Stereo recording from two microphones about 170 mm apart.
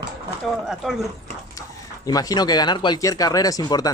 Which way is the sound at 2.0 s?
20° left (ahead or behind).